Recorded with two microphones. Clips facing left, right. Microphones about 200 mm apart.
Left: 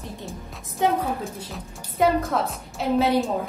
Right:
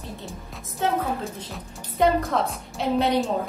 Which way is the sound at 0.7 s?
15° left (ahead or behind).